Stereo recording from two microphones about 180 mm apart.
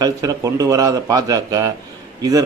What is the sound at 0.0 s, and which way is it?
A man's voice, 20° right (ahead or behind).